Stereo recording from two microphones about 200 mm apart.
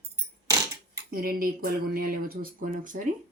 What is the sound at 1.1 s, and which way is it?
Speech, 50° right (ahead or behind).